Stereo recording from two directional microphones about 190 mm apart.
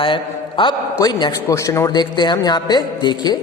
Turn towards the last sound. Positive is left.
turn(degrees=20)  # may be behind; listen again after turning